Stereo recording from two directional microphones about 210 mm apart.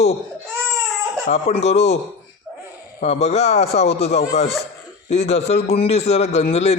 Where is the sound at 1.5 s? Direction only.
30° left (ahead or behind).